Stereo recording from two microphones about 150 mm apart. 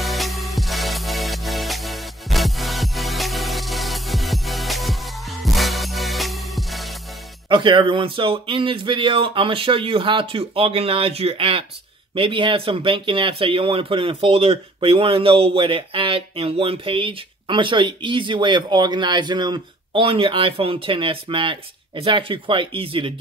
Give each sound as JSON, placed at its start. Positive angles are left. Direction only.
{"t": 0.0, "sound": "music", "side_deg": 0}
{"t": 7.4, "sound": "speech", "side_deg": -35}